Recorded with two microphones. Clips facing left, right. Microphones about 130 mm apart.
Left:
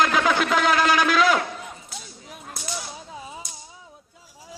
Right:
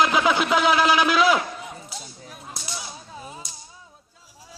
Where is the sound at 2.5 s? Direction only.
5° right (ahead or behind).